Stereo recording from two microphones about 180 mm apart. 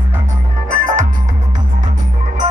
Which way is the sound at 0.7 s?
45° right (ahead or behind).